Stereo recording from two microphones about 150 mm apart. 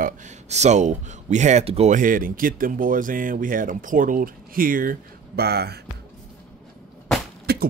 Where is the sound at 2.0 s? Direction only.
65° right (ahead or behind); by 5.8 s 90° right.